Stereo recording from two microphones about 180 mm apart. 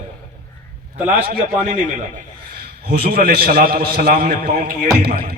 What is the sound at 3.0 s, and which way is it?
A man's voice, 60° right (ahead or behind).